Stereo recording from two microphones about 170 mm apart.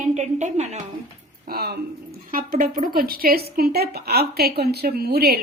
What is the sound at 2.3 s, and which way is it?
A woman's voice, 55° right (ahead or behind).